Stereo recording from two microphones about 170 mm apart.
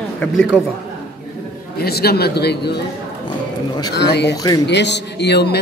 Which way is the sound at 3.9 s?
80° left.